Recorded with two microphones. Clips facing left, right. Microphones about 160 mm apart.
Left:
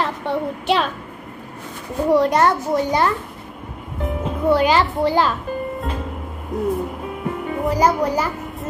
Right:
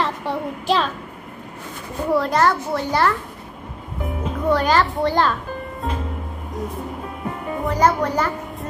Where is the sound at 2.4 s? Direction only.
20° left (ahead or behind).